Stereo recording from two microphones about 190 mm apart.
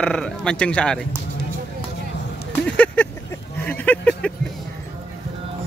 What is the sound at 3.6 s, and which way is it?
Speech, 10° left (ahead or behind).